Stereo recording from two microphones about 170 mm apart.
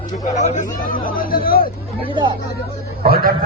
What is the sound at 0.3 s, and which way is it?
Speech, 45° left (ahead or behind).